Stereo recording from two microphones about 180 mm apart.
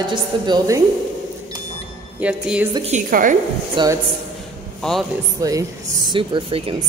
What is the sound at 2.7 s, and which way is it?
Speech, 35° right (ahead or behind).